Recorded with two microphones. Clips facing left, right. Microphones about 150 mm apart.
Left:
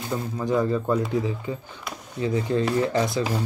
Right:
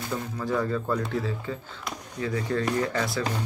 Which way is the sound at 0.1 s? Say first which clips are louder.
Left 4 dB; 20° left (ahead or behind).